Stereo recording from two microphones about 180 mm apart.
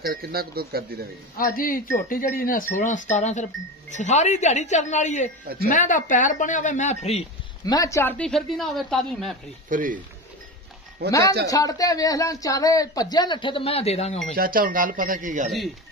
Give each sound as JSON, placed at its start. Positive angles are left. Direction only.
{"t": 0.0, "sound": "speech", "side_deg": -55}
{"t": 1.4, "sound": "a woman's voice", "side_deg": 50}
{"t": 5.4, "sound": "speech", "side_deg": -55}
{"t": 5.7, "sound": "speech", "side_deg": 45}
{"t": 7.6, "sound": "speech", "side_deg": 20}
{"t": 9.7, "sound": "speech", "side_deg": -50}
{"t": 11.1, "sound": "speech", "side_deg": 20}
{"t": 14.3, "sound": "speech", "side_deg": -55}